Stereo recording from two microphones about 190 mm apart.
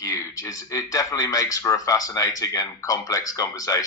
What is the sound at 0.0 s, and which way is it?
Speech, 15° left (ahead or behind).